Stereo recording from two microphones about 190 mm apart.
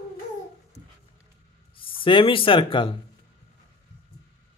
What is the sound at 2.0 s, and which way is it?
Speech, 25° left (ahead or behind).